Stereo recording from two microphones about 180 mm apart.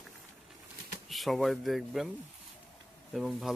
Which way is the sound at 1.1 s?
Centre (ahead or behind).